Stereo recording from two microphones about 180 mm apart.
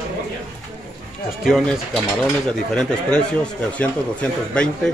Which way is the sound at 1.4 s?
5° left (ahead or behind).